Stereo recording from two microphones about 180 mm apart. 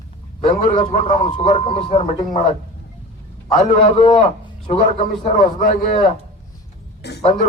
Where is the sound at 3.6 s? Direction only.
25° left (ahead or behind).